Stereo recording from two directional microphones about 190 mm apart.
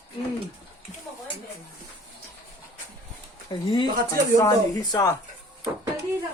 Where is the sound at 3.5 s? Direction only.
25° left (ahead or behind).